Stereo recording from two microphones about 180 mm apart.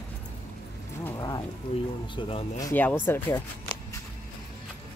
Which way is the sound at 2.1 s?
30° left (ahead or behind).